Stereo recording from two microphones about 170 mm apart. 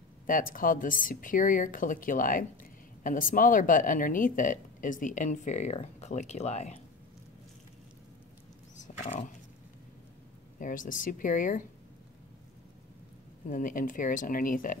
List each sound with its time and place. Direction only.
0.3 s a woman's voice: 55° left (ahead or behind)
8.8 s roaring cats: 45° left (ahead or behind)
10.6 s a woman's voice: 50° left (ahead or behind)
13.5 s a woman's voice: 50° left (ahead or behind)